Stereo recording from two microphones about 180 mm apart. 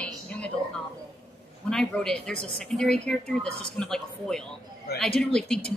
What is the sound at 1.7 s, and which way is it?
A man's voice, 5° left (ahead or behind).